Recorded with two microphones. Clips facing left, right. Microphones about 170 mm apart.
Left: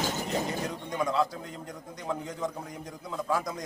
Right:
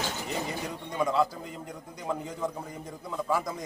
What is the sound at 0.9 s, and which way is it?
A man's voice, 5° right (ahead or behind).